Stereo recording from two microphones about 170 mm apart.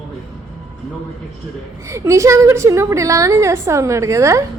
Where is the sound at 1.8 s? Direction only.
15° right (ahead or behind).